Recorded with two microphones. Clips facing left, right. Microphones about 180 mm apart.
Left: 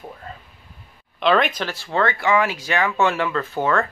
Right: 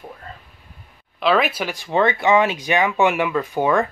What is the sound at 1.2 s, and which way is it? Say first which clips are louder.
Speech: even; 5° right (ahead or behind).